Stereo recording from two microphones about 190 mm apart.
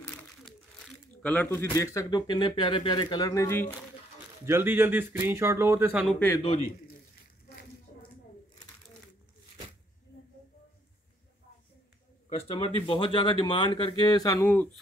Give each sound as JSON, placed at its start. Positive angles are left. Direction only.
{"t": 1.2, "sound": "speech", "side_deg": 10}
{"t": 4.5, "sound": "speech", "side_deg": -15}
{"t": 6.0, "sound": "speech", "side_deg": 5}
{"t": 6.4, "sound": "a man's voice", "side_deg": 30}
{"t": 12.3, "sound": "speech", "side_deg": 30}